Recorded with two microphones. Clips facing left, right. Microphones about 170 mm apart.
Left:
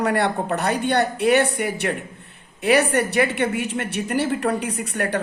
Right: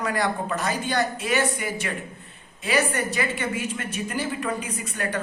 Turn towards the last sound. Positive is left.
turn(degrees=65)  # may be behind; listen again after turning